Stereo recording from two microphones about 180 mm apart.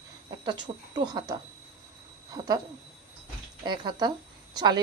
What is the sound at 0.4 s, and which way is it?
Speech, 25° right (ahead or behind).